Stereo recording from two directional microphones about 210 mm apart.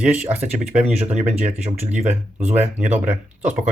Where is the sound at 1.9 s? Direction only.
35° right (ahead or behind).